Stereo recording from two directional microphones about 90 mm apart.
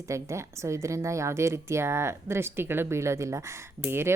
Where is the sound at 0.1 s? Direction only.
30° right (ahead or behind).